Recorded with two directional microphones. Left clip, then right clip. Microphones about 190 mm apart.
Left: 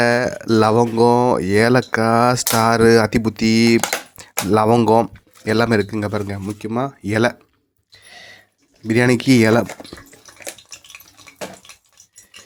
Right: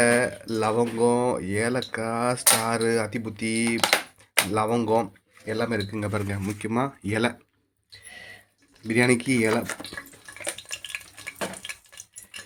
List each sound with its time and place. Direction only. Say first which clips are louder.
0.0 s speech: left 5 dB; 35° left (ahead or behind)
3.8 s typing: right 1 dB; 40° left (ahead or behind)
5.5 s speech: left 10 dB; 45° left (ahead or behind)
5.9 s speech: left 6 dB; 25° left (ahead or behind)
8.1 s a sound: left 3 dB; 25° left (ahead or behind)
8.9 s speech: left 7 dB; 35° left (ahead or behind)
9.9 s water: right 1 dB; 25° left (ahead or behind)